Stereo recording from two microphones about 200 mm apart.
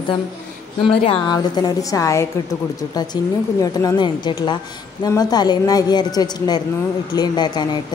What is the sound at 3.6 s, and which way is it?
A man's voice, 15° left (ahead or behind).